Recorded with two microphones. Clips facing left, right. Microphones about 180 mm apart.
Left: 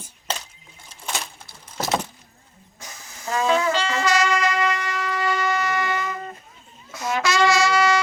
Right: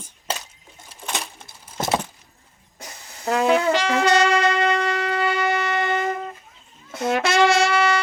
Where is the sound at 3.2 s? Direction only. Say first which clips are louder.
Right 3 dB; 60° right (ahead or behind).